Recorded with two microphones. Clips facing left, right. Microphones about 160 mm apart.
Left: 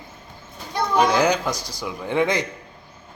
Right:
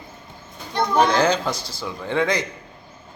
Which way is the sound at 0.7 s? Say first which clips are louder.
Right 1 dB; 10° left (ahead or behind).